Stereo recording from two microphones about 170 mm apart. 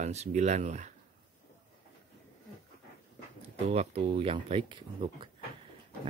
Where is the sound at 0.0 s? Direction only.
40° right (ahead or behind).